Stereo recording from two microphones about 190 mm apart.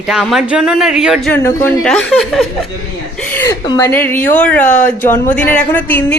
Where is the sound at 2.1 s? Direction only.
Centre (ahead or behind).